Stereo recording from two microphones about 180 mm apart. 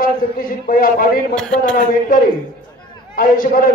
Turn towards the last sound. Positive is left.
turn(degrees=50)  # may be behind; listen again after turning